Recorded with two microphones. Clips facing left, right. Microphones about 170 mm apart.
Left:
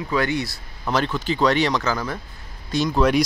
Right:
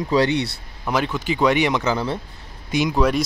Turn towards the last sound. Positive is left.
turn(degrees=-15)  # may be behind; listen again after turning